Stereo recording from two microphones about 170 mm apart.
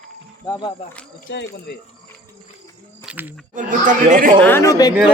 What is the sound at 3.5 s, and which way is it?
Speech, 50° right (ahead or behind).